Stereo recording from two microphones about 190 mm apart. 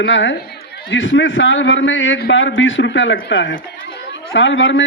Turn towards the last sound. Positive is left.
turn(degrees=75)  # may be behind; listen again after turning